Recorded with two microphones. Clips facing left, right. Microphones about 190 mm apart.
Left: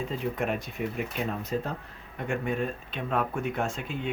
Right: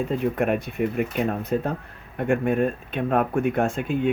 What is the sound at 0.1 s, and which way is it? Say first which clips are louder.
Speech: right 8 dB; 55° right (ahead or behind).